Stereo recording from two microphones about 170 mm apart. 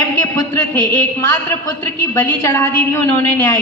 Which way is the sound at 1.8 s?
15° left (ahead or behind).